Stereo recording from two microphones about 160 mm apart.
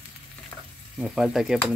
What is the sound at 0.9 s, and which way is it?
Speech, 5° right (ahead or behind).